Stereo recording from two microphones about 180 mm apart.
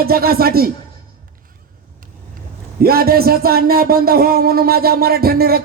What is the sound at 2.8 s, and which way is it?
Speech, 55° right (ahead or behind).